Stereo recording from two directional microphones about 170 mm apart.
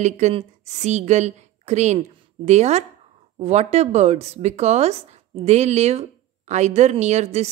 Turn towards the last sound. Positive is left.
turn(degrees=-40)  # may be behind; listen again after turning